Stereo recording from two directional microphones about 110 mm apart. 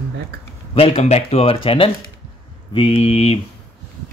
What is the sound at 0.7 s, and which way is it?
Speech, 60° left (ahead or behind).